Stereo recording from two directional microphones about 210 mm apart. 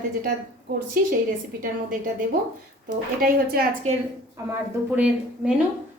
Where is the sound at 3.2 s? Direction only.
45° right (ahead or behind).